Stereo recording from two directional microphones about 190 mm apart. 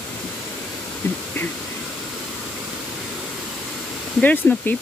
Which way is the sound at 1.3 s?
15° left (ahead or behind).